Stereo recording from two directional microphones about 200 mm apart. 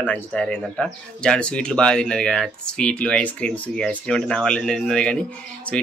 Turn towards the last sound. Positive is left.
turn(degrees=5)  # may be behind; listen again after turning